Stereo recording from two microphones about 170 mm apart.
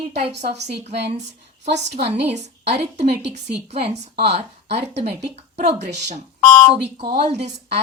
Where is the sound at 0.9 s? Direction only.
40° right (ahead or behind).